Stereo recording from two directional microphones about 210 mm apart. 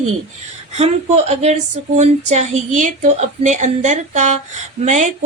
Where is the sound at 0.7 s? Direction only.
30° right (ahead or behind).